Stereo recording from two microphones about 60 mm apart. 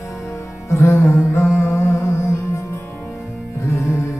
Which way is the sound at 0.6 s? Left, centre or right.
Left.